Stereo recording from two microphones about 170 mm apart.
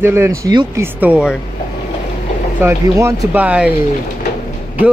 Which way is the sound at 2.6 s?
15° right (ahead or behind).